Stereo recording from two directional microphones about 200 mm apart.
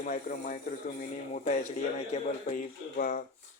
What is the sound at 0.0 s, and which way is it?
A man's voice, 45° left (ahead or behind).